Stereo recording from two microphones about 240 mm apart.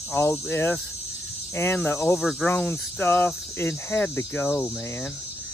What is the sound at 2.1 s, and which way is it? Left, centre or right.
Speech, centre.